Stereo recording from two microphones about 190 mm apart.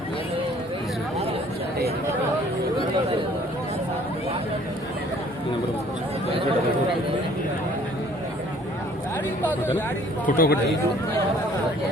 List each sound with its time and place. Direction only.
10.2 s speech: 50° left (ahead or behind)